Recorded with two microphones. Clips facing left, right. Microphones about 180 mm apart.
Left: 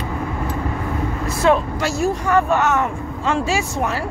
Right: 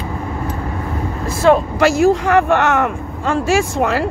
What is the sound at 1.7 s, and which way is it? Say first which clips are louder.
Speech: right 8 dB; 90° right.